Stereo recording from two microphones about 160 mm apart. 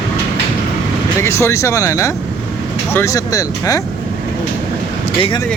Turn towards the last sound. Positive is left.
turn(degrees=20)  # may be behind; listen again after turning